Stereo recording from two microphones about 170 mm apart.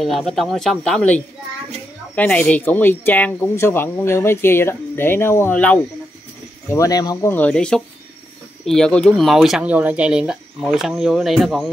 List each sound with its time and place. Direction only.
0.0 s speech: centre (ahead or behind)
6.7 s speech: 20° left (ahead or behind)
7.3 s speech: 5° left (ahead or behind)